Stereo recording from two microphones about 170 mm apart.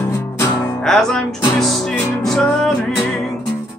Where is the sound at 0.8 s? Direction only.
5° left (ahead or behind).